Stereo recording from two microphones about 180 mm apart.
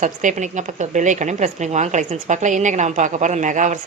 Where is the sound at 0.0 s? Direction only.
45° right (ahead or behind).